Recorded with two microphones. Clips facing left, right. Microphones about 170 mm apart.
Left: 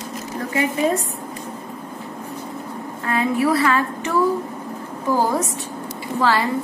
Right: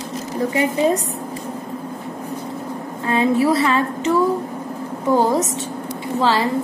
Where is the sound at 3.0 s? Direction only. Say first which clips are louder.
Right 3 dB; 25° right (ahead or behind).